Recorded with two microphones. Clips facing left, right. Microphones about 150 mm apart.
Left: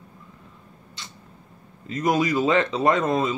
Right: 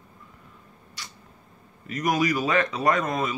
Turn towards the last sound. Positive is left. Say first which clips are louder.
# left 3 dB
turn(degrees=25)  # may be behind; listen again after turning